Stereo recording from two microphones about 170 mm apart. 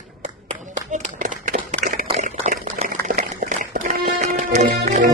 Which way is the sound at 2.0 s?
45° right (ahead or behind).